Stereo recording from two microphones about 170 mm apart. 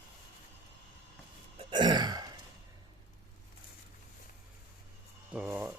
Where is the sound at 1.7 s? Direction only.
25° right (ahead or behind).